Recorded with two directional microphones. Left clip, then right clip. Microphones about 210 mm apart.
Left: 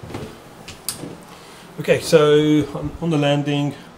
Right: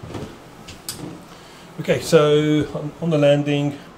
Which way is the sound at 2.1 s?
Centre (ahead or behind).